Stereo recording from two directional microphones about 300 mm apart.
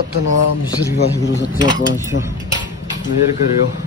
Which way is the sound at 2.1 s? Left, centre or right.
Left.